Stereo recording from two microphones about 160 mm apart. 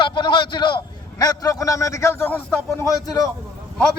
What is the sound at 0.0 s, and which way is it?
A man's voice, 30° left (ahead or behind).